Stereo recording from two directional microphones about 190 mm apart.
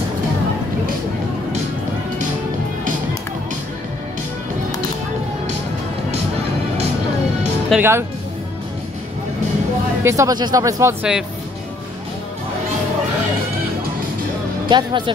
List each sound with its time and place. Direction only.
7.7 s speech: 10° right (ahead or behind)
10.0 s speech: 15° right (ahead or behind)
14.7 s speech: 25° right (ahead or behind)